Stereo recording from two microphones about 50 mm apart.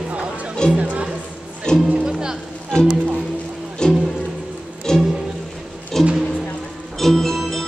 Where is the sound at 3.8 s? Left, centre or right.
Centre.